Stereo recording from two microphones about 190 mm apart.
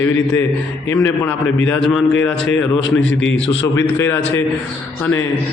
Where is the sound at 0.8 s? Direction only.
10° left (ahead or behind).